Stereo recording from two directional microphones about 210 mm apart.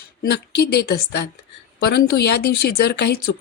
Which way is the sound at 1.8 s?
50° left (ahead or behind).